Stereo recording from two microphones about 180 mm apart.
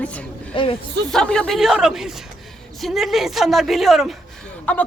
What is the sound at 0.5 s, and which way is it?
Speech, 30° left (ahead or behind).